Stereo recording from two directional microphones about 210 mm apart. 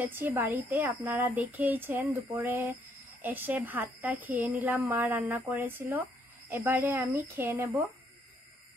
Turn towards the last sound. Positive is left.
turn(degrees=-10)  # may be behind; listen again after turning